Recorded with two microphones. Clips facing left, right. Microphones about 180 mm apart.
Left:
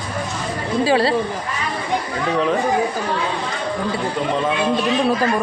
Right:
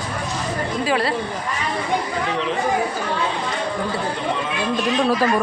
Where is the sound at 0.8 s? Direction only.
30° left (ahead or behind).